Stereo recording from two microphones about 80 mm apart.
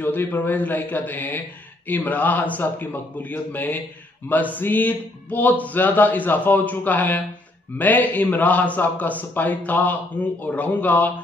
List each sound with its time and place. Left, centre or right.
0.0 s speech: left